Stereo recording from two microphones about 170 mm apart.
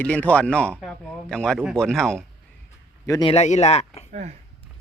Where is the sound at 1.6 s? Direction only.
10° right (ahead or behind).